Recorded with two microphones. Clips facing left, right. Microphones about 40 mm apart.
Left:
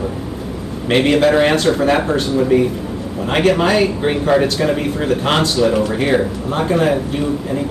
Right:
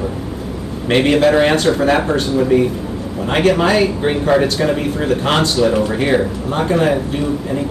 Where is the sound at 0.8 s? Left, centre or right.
Centre.